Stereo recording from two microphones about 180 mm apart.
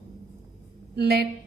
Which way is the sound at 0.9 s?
65° right (ahead or behind).